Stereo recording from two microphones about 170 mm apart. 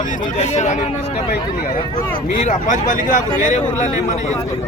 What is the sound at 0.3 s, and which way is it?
Speech, 40° left (ahead or behind).